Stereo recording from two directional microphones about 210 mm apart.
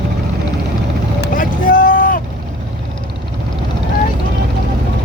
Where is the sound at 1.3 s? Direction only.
40° left (ahead or behind).